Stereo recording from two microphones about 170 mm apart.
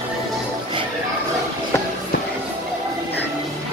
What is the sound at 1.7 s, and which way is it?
Music, 15° left (ahead or behind).